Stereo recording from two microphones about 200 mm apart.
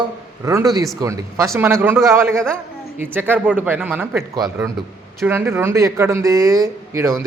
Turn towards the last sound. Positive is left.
turn(degrees=-15)  # may be behind; listen again after turning